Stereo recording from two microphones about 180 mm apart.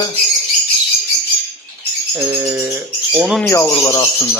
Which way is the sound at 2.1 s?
15° right (ahead or behind).